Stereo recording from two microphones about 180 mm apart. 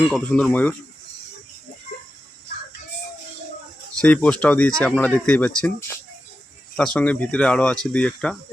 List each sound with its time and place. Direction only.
0.1 s speech: 5° left (ahead or behind)
4.0 s speech: 5° left (ahead or behind)
6.7 s speech: 5° left (ahead or behind)